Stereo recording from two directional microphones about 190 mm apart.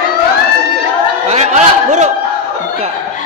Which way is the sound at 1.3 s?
40° right (ahead or behind).